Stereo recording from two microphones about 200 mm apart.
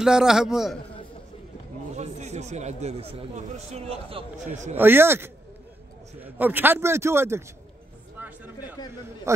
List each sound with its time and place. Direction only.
0.0 s a man's voice: 5° right (ahead or behind)
2.0 s speech: 35° right (ahead or behind)
4.7 s a man's voice: 10° right (ahead or behind)
8.2 s a sound: 10° right (ahead or behind)